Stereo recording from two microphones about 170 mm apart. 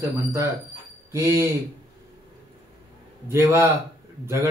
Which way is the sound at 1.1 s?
15° right (ahead or behind).